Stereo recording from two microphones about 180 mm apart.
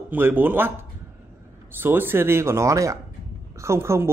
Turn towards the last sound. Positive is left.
turn(degrees=-15)  # may be behind; listen again after turning